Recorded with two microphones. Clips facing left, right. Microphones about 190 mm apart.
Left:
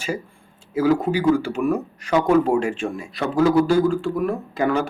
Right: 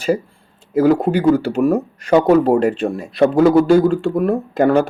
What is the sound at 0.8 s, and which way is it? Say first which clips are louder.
Speech: right 5 dB; 60° right (ahead or behind).